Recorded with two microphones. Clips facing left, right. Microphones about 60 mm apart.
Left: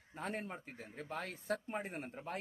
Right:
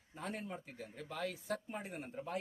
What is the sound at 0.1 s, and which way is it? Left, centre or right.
A man's voice, left.